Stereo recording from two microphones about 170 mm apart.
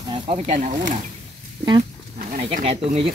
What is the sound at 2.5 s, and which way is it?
Speech, 40° right (ahead or behind).